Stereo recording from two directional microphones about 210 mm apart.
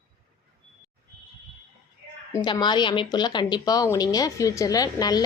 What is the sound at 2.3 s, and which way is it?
A woman's voice, 20° left (ahead or behind).